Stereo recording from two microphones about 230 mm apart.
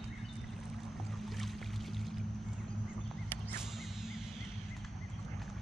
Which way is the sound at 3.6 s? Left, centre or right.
Centre.